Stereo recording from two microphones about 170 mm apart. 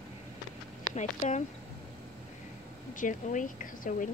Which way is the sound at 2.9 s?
50° left (ahead or behind).